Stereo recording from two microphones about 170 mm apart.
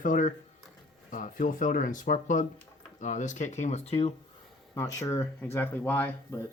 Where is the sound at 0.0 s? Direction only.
50° left (ahead or behind).